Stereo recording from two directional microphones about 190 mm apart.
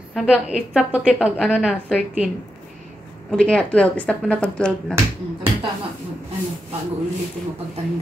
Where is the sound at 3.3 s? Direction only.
5° left (ahead or behind).